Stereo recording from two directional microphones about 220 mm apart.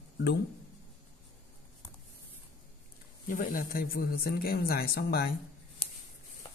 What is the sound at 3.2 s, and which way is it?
Speech, 40° left (ahead or behind).